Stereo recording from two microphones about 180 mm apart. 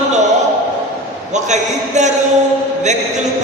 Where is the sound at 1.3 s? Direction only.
40° right (ahead or behind).